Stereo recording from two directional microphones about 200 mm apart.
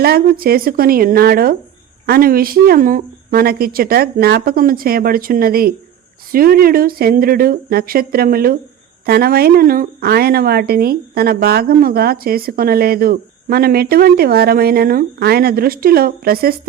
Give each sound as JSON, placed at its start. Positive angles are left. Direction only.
{"t": 0.0, "sound": "a woman's voice", "side_deg": -50}